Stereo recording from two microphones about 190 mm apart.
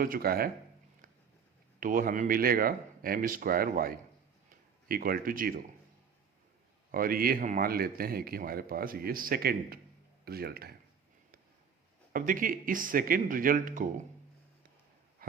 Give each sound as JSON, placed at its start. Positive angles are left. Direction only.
{"t": 0.0, "sound": "speech", "side_deg": -50}
{"t": 1.8, "sound": "speech", "side_deg": -45}
{"t": 6.9, "sound": "speech", "side_deg": -50}
{"t": 12.1, "sound": "speech", "side_deg": -45}
{"t": 15.2, "sound": "a sound", "side_deg": -50}